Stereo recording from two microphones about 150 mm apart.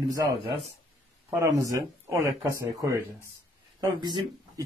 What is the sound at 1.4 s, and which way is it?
Speech, 20° right (ahead or behind).